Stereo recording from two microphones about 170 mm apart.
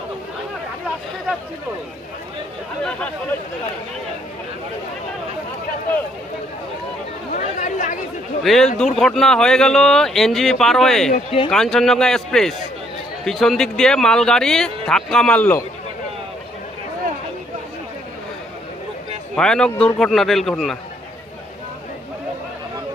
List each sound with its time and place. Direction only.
7.3 s speech: 50° left (ahead or behind)
8.5 s speech: centre (ahead or behind)
11.1 s speech: 40° left (ahead or behind)
11.5 s speech: 5° left (ahead or behind)
19.4 s speech: 5° left (ahead or behind)